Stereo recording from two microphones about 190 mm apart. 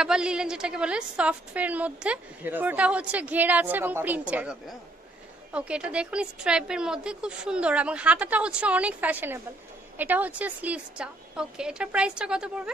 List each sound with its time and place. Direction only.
0.0 s a woman's voice: 5° right (ahead or behind)